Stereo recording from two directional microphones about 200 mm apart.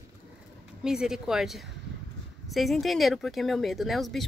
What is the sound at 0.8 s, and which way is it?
Speech, 5° right (ahead or behind).